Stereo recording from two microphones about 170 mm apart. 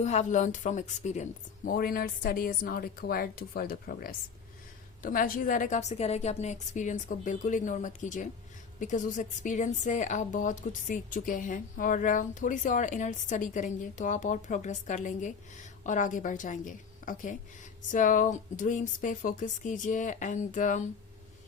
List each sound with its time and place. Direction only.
0.0 s a woman's voice: 45° left (ahead or behind)